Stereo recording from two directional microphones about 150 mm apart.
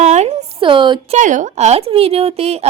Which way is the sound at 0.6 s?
35° right (ahead or behind).